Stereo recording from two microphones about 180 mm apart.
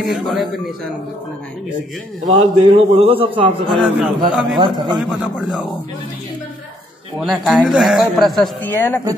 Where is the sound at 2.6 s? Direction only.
30° right (ahead or behind).